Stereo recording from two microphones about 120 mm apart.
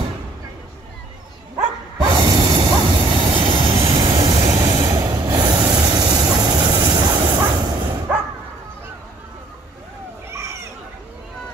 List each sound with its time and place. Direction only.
2.0 s a sound: 30° right (ahead or behind)
2.7 s vehicle: 40° right (ahead or behind)
4.4 s train: 30° right (ahead or behind)
5.7 s vehicle: 30° right (ahead or behind)
7.8 s bow-wow: 15° right (ahead or behind)